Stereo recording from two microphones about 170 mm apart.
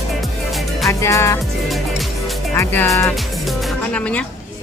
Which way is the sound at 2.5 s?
10° left (ahead or behind).